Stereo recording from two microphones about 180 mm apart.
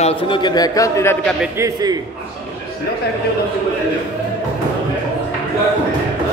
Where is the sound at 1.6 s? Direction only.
20° right (ahead or behind).